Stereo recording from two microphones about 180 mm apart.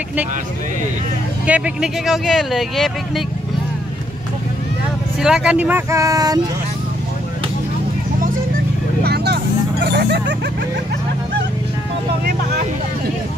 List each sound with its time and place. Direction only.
1.4 s speech: 5° right (ahead or behind)
5.2 s speech: 5° right (ahead or behind); by 6.4 s 20° right (ahead or behind)
9.0 s vehicle: 65° right (ahead or behind)
9.8 s speech: 65° right (ahead or behind)